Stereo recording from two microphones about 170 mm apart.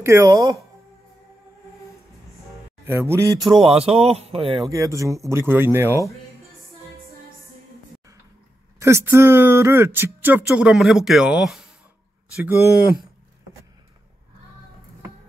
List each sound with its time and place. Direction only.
0.0 s speech: 15° right (ahead or behind)
2.8 s a man's voice: 15° right (ahead or behind)
3.3 s speech: centre (ahead or behind)
3.7 s speech: 35° right (ahead or behind)
4.6 s speech: 20° right (ahead or behind)
8.7 s speech: 15° right (ahead or behind)